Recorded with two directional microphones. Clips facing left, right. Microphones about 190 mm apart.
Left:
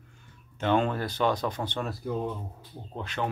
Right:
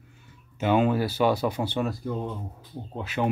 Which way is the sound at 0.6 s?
5° right (ahead or behind).